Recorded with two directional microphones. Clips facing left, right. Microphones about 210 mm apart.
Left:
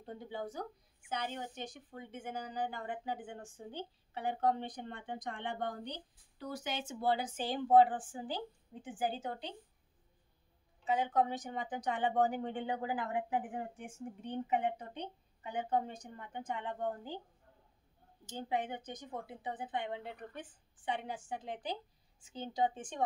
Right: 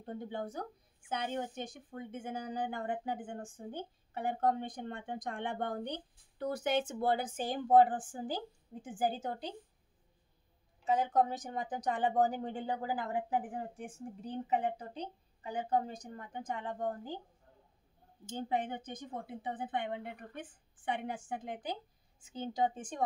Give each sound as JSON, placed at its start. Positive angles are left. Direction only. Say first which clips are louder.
{"t": 0.0, "sound": "speech", "louder": "right 3 dB", "side_deg": -50}
{"t": 10.9, "sound": "speech", "louder": "right 2 dB", "side_deg": -45}
{"t": 18.2, "sound": "speech", "louder": "right 2 dB", "side_deg": -50}